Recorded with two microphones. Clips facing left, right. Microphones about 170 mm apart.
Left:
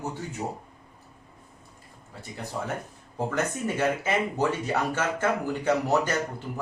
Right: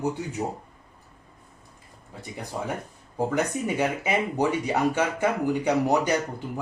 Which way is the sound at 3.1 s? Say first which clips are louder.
Right 3 dB; 15° right (ahead or behind).